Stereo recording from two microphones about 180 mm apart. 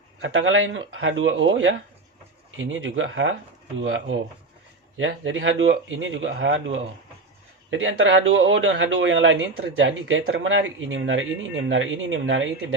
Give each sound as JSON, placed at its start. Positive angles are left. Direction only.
{"t": 0.2, "sound": "speech", "side_deg": -90}